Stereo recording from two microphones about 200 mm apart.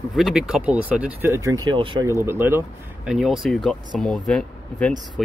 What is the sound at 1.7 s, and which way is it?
Speech, 25° right (ahead or behind).